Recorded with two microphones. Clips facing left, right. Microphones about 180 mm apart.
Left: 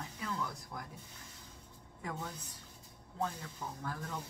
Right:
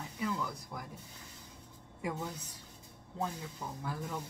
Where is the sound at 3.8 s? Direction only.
10° right (ahead or behind).